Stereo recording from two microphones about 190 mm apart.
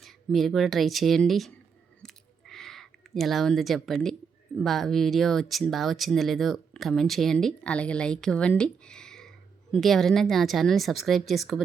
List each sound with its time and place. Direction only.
0.0 s speech: centre (ahead or behind)
2.5 s a sound: centre (ahead or behind)
4.5 s speech: centre (ahead or behind)